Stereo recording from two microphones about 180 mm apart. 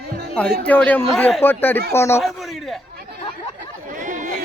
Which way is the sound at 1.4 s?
10° left (ahead or behind).